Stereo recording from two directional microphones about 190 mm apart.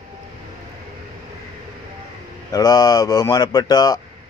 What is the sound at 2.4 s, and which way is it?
Speech, 20° left (ahead or behind).